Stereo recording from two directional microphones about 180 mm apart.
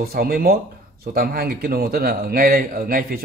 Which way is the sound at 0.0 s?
55° right (ahead or behind).